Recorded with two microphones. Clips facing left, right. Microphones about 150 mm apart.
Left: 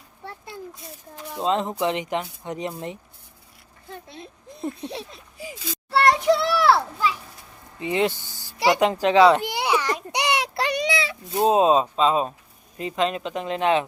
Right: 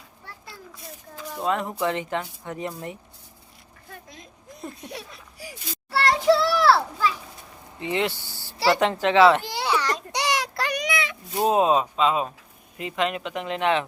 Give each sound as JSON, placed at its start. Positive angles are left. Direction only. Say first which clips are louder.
{"t": 0.3, "sound": "a sound", "louder": "left 7 dB", "side_deg": 25}
{"t": 1.3, "sound": "a child's voice", "louder": "left 2 dB", "side_deg": 25}
{"t": 9.0, "sound": "baby cry", "louder": "left 1 dB", "side_deg": 20}
{"t": 11.3, "sound": "speech", "louder": "left 2 dB", "side_deg": 25}